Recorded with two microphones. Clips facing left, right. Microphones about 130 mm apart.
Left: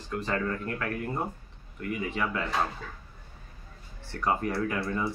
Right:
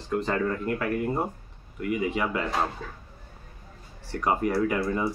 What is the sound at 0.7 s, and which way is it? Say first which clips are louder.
Speech: right 5 dB; 10° right (ahead or behind).